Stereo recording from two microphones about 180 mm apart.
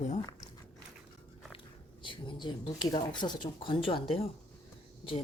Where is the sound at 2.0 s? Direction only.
25° left (ahead or behind).